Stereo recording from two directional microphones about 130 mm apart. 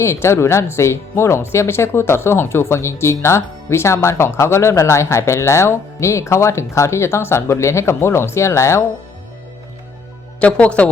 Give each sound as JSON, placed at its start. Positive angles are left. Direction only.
{"t": 0.0, "sound": "speech", "side_deg": 20}
{"t": 10.4, "sound": "speech", "side_deg": 10}